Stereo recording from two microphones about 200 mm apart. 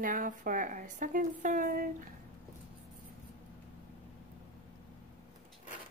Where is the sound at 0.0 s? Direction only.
40° right (ahead or behind).